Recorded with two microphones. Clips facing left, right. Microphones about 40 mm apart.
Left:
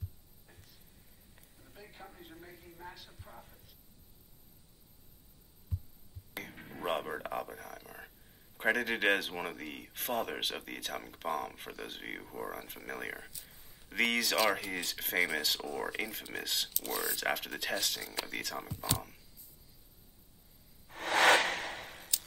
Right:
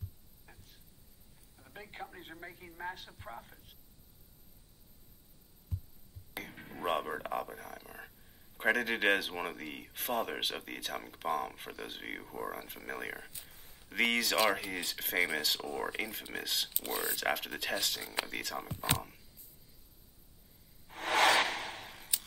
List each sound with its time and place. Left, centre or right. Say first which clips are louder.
1.7 s a man's voice: right 6 dB; right
3.3 s a man's voice: right 4 dB; right
6.3 s a sound: even; centre
8.7 s speech: even; centre
13.3 s speech: right 1 dB; right
13.7 s speech: even; centre
16.7 s speech: even; centre
17.1 s speech: even; centre
21.5 s a sound: left 2 dB; left